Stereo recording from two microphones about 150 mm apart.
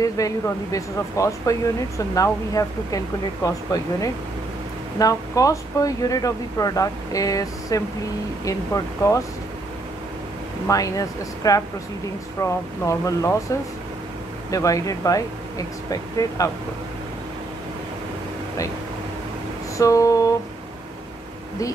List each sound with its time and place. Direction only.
0.0 s speech: 25° left (ahead or behind)
10.7 s speech: 25° left (ahead or behind)
14.5 s speech: 20° left (ahead or behind)
19.8 s speech: 20° left (ahead or behind)